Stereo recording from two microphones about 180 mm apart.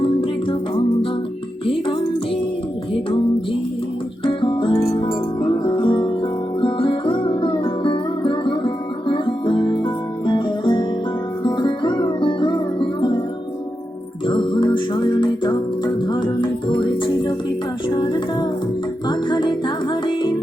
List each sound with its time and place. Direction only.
0.0 s music: 30° left (ahead or behind)
1.6 s music: 30° left (ahead or behind)
4.2 s music: 30° left (ahead or behind)
14.3 s music: 25° left (ahead or behind)